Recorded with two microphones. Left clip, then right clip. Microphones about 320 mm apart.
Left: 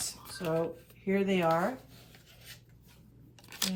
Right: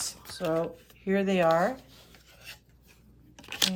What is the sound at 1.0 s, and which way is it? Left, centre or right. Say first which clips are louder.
Speech: right 4 dB; right.